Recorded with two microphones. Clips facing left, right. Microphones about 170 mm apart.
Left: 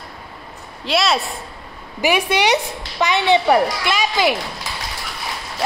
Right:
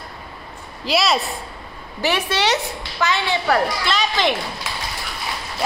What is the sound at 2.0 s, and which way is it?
A woman's voice, 10° left (ahead or behind).